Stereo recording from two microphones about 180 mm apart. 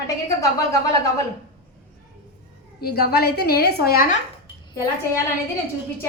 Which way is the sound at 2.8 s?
60° left (ahead or behind).